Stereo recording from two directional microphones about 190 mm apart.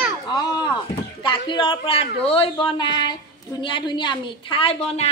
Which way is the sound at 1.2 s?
25° left (ahead or behind).